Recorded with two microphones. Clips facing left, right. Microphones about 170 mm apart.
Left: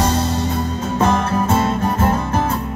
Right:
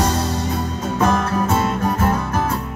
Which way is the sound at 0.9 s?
25° left (ahead or behind).